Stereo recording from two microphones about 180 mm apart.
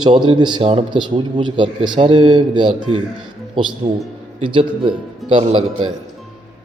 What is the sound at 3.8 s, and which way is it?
A man's voice, 35° right (ahead or behind).